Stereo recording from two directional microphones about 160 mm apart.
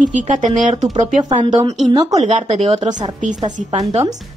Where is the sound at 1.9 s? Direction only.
20° right (ahead or behind).